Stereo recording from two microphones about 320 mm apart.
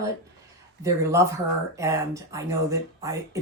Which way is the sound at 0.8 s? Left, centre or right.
Centre.